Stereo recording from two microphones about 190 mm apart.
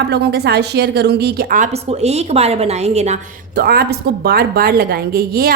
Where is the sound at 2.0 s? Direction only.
35° right (ahead or behind).